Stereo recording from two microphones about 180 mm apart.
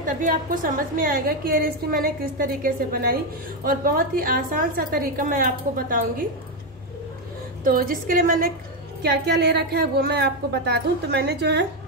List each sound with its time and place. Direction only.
0.0 s a woman's voice: 50° right (ahead or behind)
7.6 s a woman's voice: 50° right (ahead or behind)
9.0 s a woman's voice: 65° right (ahead or behind)